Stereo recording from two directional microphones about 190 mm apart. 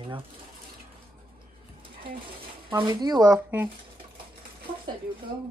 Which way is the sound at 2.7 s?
25° right (ahead or behind).